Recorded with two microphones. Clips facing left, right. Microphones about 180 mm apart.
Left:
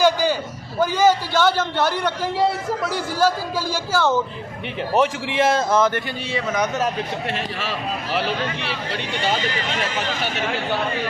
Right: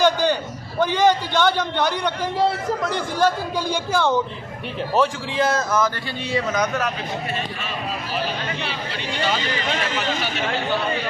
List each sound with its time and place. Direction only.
0.0 s a sound: 5° left (ahead or behind)
0.9 s speech: 5° left (ahead or behind)
4.9 s speech: 25° left (ahead or behind)
6.3 s speech: 10° left (ahead or behind)
7.3 s a man's voice: 90° left